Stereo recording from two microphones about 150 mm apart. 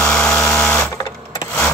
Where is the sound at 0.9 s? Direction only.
20° left (ahead or behind).